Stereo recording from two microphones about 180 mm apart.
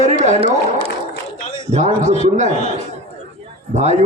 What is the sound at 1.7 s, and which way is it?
Speech, 40° right (ahead or behind).